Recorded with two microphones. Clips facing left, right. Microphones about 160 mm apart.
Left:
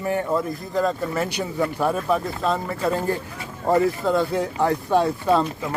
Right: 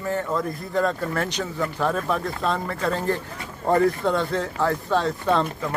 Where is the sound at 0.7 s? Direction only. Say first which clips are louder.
Left 1 dB; 5° left (ahead or behind).